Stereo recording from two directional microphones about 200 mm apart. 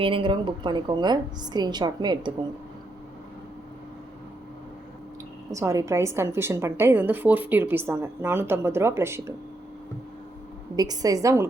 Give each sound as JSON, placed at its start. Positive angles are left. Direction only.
{"t": 0.0, "sound": "a woman's voice", "side_deg": -25}
{"t": 5.5, "sound": "a woman's voice", "side_deg": -15}
{"t": 10.8, "sound": "a woman's voice", "side_deg": -20}